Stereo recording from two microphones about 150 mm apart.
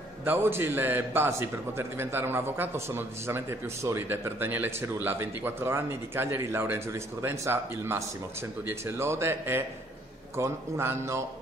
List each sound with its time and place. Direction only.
0.2 s a man's voice: 15° right (ahead or behind)